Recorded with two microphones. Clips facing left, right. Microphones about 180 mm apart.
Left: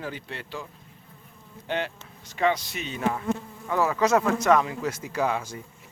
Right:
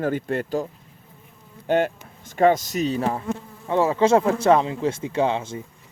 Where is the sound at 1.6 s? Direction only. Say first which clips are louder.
Right 9 dB; 45° right (ahead or behind).